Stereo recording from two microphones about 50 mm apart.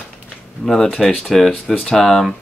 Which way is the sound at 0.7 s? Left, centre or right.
Centre.